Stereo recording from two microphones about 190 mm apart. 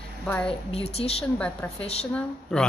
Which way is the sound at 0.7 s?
30° left (ahead or behind).